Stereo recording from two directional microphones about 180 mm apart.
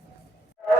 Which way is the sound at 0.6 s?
Centre (ahead or behind).